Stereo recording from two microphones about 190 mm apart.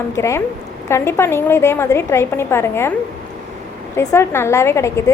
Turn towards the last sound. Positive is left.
turn(degrees=15)  # may be behind; listen again after turning